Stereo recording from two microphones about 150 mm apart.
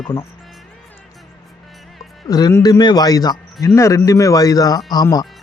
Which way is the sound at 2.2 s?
25° left (ahead or behind).